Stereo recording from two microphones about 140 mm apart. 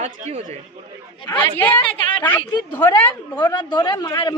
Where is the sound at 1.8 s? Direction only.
40° left (ahead or behind).